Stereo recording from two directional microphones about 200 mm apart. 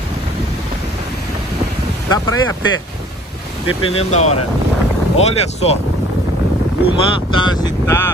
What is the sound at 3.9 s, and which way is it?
Speech, 35° left (ahead or behind).